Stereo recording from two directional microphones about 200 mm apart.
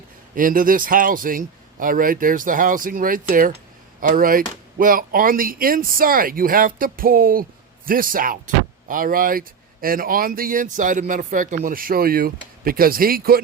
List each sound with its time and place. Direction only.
0.3 s speech: 45° right (ahead or behind)